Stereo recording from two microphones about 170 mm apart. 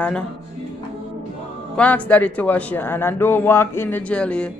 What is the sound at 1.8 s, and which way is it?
A man's voice, 10° left (ahead or behind).